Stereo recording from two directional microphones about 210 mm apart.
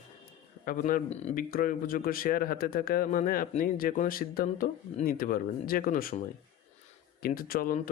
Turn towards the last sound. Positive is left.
turn(degrees=45)  # may be behind; listen again after turning